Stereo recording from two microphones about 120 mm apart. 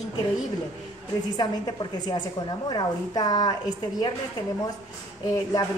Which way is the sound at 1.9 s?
35° left (ahead or behind).